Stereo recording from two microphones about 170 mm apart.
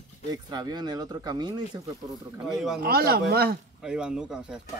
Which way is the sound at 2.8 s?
65° right (ahead or behind).